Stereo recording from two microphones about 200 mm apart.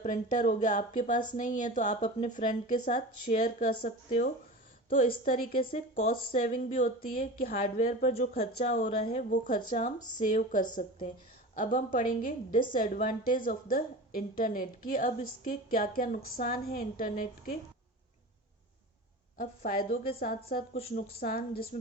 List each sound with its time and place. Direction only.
0.0 s a woman's voice: 35° left (ahead or behind)
19.4 s speech: 45° left (ahead or behind)